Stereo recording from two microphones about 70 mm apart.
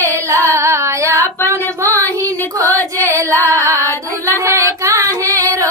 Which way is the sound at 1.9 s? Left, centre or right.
Left.